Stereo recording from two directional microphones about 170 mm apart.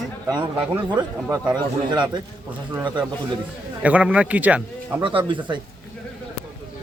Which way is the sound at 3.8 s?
5° right (ahead or behind).